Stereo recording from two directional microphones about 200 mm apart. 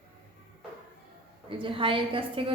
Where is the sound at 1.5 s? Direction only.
25° right (ahead or behind).